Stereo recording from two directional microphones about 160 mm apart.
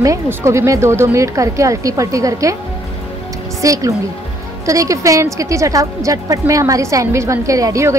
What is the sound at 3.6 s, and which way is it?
A woman's voice, 20° right (ahead or behind).